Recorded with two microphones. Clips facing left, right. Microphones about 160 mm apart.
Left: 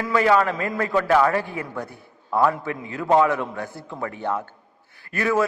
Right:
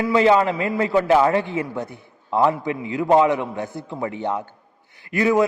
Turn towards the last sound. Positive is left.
turn(degrees=-20)  # may be behind; listen again after turning